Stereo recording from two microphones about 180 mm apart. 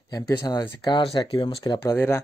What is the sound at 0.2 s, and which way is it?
Speech, 25° left (ahead or behind).